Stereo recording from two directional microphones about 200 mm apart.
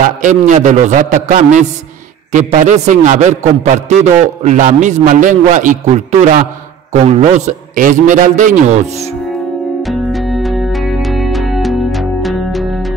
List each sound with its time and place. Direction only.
0.0 s a man's voice: 40° right (ahead or behind)
9.8 s music: centre (ahead or behind)